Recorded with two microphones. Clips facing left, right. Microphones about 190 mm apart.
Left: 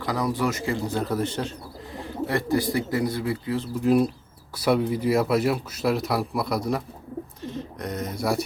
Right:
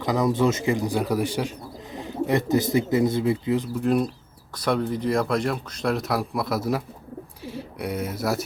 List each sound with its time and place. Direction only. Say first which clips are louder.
0.0 s speech: right 4 dB; 20° right (ahead or behind)
3.8 s speech: left 2 dB; 5° left (ahead or behind)